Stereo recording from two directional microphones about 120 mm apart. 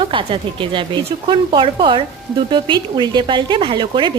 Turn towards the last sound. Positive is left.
turn(degrees=-40)  # may be behind; listen again after turning